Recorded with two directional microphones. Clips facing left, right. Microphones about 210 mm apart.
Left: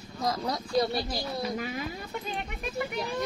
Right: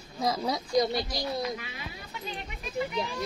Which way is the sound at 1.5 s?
45° left (ahead or behind).